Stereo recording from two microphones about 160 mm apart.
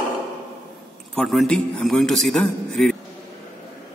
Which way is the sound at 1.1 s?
5° left (ahead or behind).